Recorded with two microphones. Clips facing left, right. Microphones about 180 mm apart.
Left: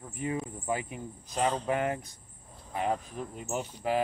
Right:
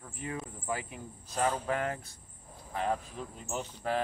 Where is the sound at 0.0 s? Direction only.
20° left (ahead or behind).